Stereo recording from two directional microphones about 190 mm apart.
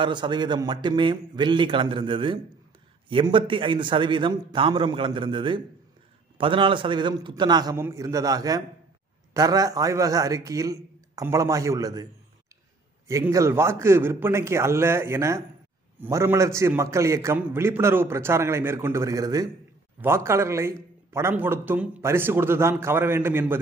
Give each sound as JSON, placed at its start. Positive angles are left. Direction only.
{"t": 0.0, "sound": "a man's voice", "side_deg": -25}
{"t": 13.1, "sound": "speech", "side_deg": -15}